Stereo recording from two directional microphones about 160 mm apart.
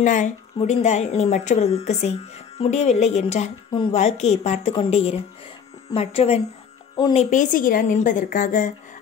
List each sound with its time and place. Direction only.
0.0 s speech: 50° left (ahead or behind)
7.2 s speech: 50° left (ahead or behind)